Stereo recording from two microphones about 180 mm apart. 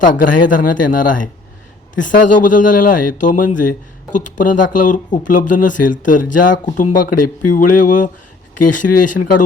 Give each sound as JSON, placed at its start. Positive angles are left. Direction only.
{"t": 0.0, "sound": "speech", "side_deg": 45}